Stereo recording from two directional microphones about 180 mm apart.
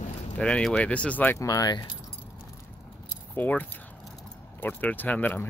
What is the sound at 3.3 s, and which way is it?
Speech, 10° left (ahead or behind).